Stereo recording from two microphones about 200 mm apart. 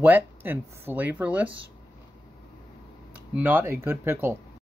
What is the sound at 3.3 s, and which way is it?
Speech, 10° right (ahead or behind).